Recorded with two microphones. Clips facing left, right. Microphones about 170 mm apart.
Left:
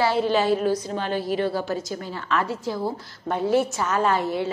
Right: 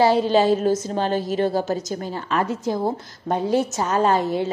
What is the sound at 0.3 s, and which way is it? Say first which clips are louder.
A woman's voice: right 3 dB; 40° right (ahead or behind).